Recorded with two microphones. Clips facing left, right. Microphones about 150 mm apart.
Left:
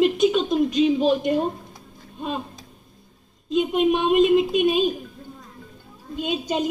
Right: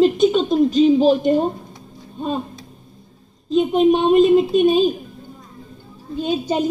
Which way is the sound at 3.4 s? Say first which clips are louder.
Right 5 dB; 30° right (ahead or behind).